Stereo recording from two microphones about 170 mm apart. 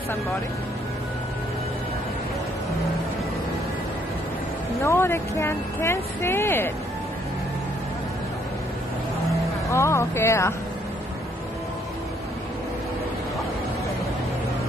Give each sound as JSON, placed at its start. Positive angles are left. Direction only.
{"t": 4.8, "sound": "speech", "side_deg": 15}
{"t": 9.7, "sound": "speech", "side_deg": 15}